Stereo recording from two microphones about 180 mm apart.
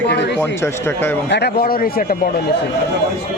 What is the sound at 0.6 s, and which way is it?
Speech, 10° left (ahead or behind).